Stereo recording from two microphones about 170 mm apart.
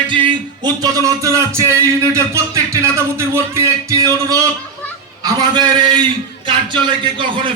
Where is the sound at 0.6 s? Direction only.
20° right (ahead or behind).